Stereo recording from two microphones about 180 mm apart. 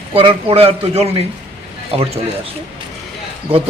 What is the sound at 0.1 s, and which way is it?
Speech, 30° right (ahead or behind).